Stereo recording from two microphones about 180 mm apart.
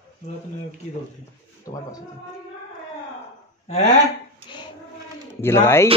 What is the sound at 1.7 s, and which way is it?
Speech, 20° left (ahead or behind).